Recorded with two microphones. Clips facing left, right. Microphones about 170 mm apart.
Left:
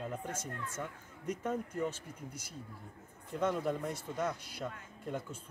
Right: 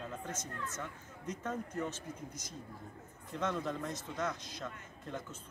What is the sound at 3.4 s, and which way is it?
Speech, 10° left (ahead or behind).